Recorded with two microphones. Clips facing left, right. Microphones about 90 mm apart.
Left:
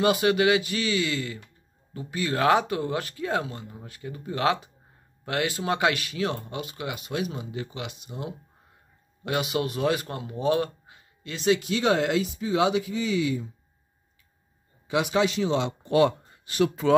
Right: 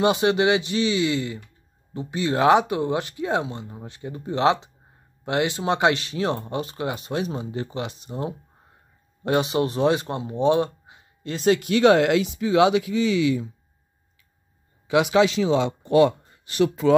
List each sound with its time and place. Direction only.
0.0 s speech: 25° right (ahead or behind)
11.2 s speech: 45° right (ahead or behind); by 13.5 s 90° right
14.9 s a man's voice: 90° right